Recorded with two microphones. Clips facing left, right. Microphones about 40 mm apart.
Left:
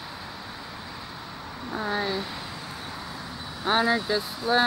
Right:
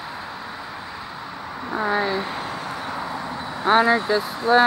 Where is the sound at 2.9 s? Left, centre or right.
Right.